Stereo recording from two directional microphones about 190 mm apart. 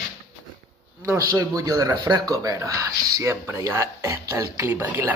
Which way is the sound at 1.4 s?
20° right (ahead or behind).